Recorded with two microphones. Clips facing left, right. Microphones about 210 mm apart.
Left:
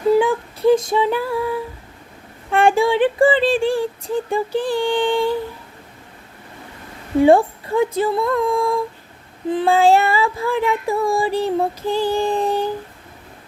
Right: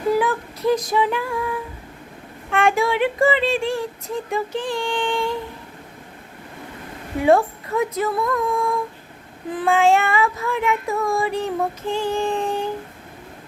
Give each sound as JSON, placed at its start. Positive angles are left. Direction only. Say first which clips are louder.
{"t": 0.1, "sound": "female singing", "louder": "left 4 dB", "side_deg": 25}
{"t": 2.5, "sound": "child singing", "louder": "left 4 dB", "side_deg": 30}
{"t": 7.2, "sound": "child singing", "louder": "left 4 dB", "side_deg": 30}